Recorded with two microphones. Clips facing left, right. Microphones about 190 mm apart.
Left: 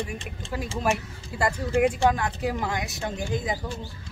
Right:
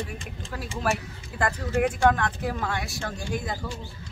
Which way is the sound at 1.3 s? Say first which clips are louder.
Left 2 dB; 10° left (ahead or behind).